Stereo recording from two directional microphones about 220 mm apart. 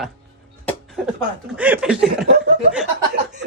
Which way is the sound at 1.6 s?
5° right (ahead or behind).